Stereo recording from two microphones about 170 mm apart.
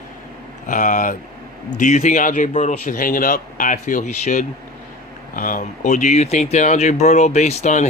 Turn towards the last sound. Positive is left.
turn(degrees=45)  # may be behind; listen again after turning